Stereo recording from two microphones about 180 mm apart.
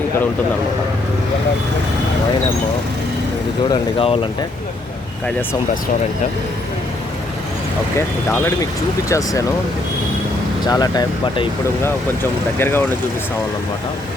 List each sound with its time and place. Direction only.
3.7 s speech: 30° left (ahead or behind)
7.9 s speech: 15° left (ahead or behind)
10.7 s speech: 20° left (ahead or behind)
12.5 s speech: 10° left (ahead or behind)